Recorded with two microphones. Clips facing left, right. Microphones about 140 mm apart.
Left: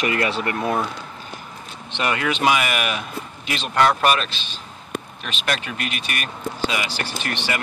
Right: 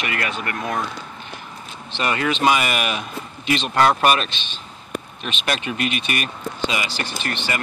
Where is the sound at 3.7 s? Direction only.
10° right (ahead or behind).